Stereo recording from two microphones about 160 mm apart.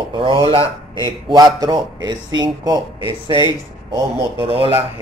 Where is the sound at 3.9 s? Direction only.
20° right (ahead or behind).